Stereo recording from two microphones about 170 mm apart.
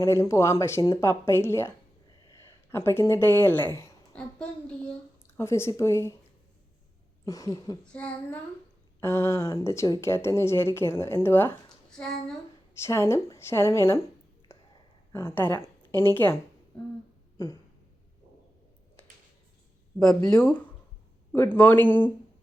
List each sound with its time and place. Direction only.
0.0 s speech: 15° left (ahead or behind)
2.7 s speech: 15° left (ahead or behind)
3.8 s a sound: 10° left (ahead or behind)
5.4 s speech: 15° left (ahead or behind)
7.3 s speech: 20° left (ahead or behind)
7.9 s speech: 10° left (ahead or behind)
11.9 s a sound: 5° left (ahead or behind)
12.8 s speech: 15° left (ahead or behind)
15.1 s speech: 15° left (ahead or behind)
17.3 s a sound: 20° left (ahead or behind)
20.0 s speech: 5° left (ahead or behind)
21.3 s speech: 10° left (ahead or behind)